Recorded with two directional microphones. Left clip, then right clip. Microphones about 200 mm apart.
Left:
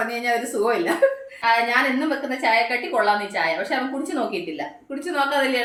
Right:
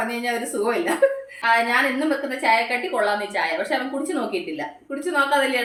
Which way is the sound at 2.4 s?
5° left (ahead or behind).